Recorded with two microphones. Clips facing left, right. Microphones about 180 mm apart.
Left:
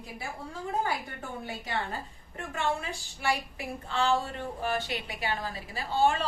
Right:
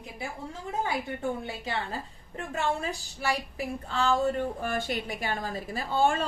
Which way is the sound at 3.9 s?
45° right (ahead or behind).